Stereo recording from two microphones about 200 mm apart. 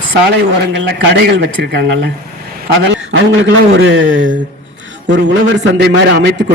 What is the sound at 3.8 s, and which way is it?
Speech, 75° right (ahead or behind).